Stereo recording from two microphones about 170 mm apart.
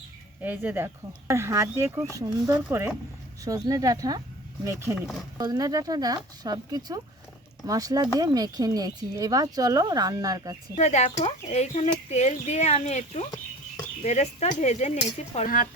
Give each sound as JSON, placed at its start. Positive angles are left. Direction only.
{"t": 0.4, "sound": "speech", "side_deg": -10}
{"t": 10.8, "sound": "speech", "side_deg": 40}